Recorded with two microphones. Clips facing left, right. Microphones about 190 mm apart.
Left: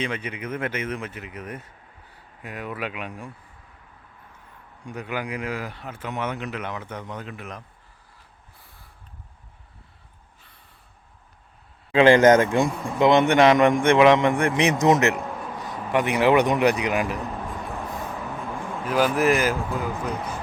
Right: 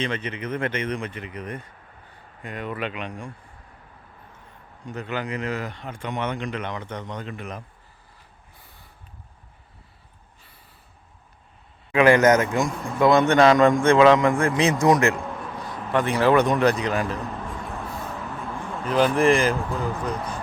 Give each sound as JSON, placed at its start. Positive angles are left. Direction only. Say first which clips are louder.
{"t": 0.0, "sound": "speech", "louder": "right 1 dB", "side_deg": 10}
{"t": 4.8, "sound": "speech", "louder": "right 1 dB", "side_deg": 10}
{"t": 8.5, "sound": "snort", "louder": "right 2 dB", "side_deg": 0}
{"t": 11.9, "sound": "a man's voice", "louder": "left 2 dB", "side_deg": 30}
{"t": 18.3, "sound": "speech", "louder": "left 1 dB", "side_deg": 5}